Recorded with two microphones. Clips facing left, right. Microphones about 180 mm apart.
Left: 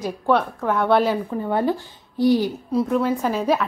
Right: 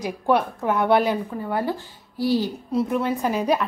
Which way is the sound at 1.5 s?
20° left (ahead or behind).